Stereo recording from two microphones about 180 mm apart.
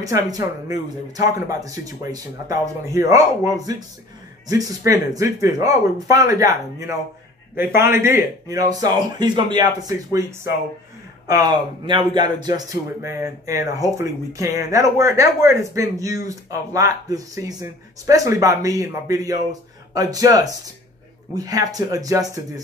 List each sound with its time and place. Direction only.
0.0 s speech: 20° right (ahead or behind)